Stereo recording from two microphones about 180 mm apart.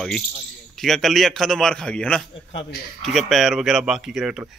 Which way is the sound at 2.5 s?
90° left.